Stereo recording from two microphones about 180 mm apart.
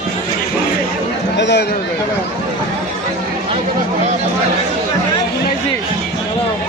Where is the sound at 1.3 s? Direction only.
75° left (ahead or behind).